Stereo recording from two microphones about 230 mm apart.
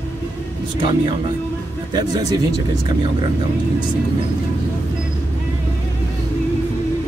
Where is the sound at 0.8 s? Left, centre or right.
Centre.